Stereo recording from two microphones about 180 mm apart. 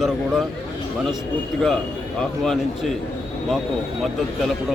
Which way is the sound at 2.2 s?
Centre (ahead or behind).